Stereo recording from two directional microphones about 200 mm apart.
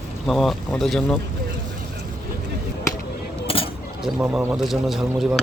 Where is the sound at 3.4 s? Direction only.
30° left (ahead or behind).